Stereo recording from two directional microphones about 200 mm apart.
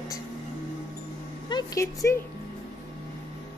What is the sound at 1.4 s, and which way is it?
Speech, 20° left (ahead or behind).